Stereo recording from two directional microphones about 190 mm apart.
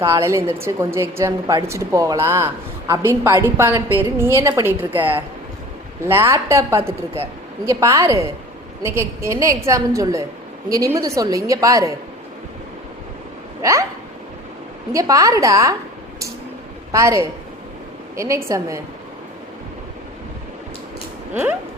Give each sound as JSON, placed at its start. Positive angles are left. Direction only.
{"t": 0.0, "sound": "a woman's voice", "side_deg": -15}
{"t": 13.6, "sound": "hiccup", "side_deg": -15}
{"t": 14.9, "sound": "a woman's voice", "side_deg": -15}
{"t": 16.9, "sound": "a woman's voice", "side_deg": -15}